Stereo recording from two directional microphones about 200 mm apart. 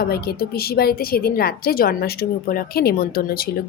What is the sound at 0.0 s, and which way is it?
A woman's voice, 50° left (ahead or behind).